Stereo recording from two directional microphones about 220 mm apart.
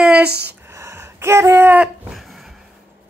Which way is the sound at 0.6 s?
15° right (ahead or behind).